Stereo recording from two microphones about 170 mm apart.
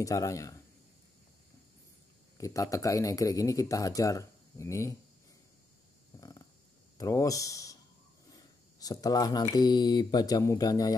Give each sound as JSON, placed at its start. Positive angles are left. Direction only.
{"t": 0.0, "sound": "speech", "side_deg": 20}
{"t": 2.3, "sound": "speech", "side_deg": 20}
{"t": 6.1, "sound": "a sound", "side_deg": 20}
{"t": 7.0, "sound": "speech", "side_deg": 20}